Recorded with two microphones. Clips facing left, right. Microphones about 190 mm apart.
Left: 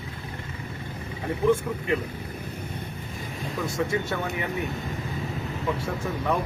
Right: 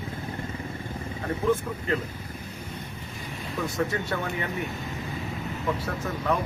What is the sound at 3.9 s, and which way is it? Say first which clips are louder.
Speech: left 2 dB; 10° left (ahead or behind).